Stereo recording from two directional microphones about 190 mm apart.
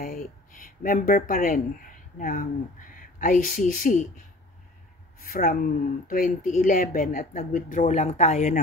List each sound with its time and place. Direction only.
0.0 s a sound: 50° left (ahead or behind)
2.1 s speech: 45° left (ahead or behind)
5.2 s speech: 50° left (ahead or behind)